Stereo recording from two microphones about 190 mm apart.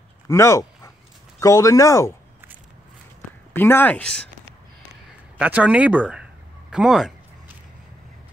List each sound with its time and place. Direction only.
0.3 s dog: 15° left (ahead or behind)
1.4 s speech: 15° left (ahead or behind)
3.5 s speech: 10° left (ahead or behind)
5.4 s speech: 5° right (ahead or behind)
6.7 s a sound: 5° right (ahead or behind)